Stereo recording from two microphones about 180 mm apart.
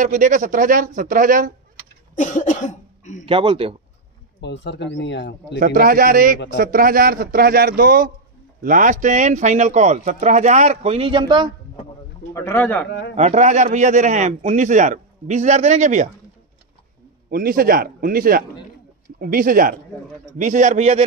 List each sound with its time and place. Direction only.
0.0 s a man's voice: 45° right (ahead or behind)
2.1 s speech: 45° left (ahead or behind)
3.3 s speech: 30° right (ahead or behind)
4.4 s speech: 75° left (ahead or behind)
5.6 s a man's voice: 50° right (ahead or behind); by 11.5 s 25° right (ahead or behind)
12.4 s a man's voice: 15° left (ahead or behind)
13.1 s a man's voice: 40° right (ahead or behind)
17.3 s a man's voice: 55° right (ahead or behind); by 21.0 s 40° right (ahead or behind)